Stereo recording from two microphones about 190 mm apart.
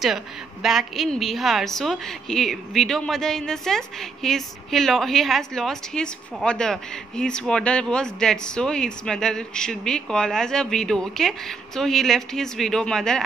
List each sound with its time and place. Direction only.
0.0 s a woman's voice: centre (ahead or behind)